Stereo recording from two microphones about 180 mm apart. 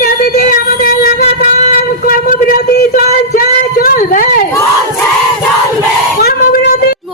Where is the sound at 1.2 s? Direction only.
40° left (ahead or behind).